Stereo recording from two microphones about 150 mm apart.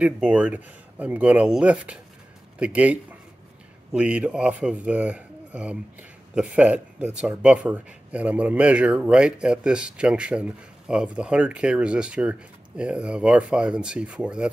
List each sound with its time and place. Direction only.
0.0 s speech: 10° right (ahead or behind)